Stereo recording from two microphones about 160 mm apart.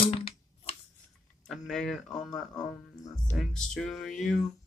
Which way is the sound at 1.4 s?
Centre (ahead or behind).